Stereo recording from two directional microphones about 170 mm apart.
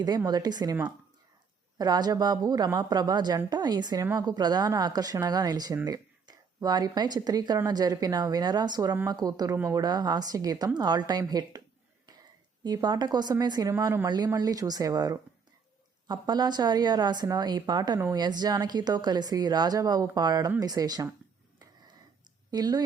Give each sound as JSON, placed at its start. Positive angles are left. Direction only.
{"t": 0.3, "sound": "speech", "side_deg": -25}
{"t": 1.8, "sound": "speech", "side_deg": -25}
{"t": 12.6, "sound": "speech", "side_deg": -25}
{"t": 22.5, "sound": "speech", "side_deg": -25}